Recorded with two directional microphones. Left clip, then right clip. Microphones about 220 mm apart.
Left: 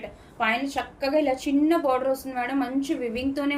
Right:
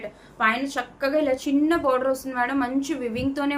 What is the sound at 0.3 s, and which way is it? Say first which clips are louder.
A woman's voice: right 2 dB; 15° right (ahead or behind).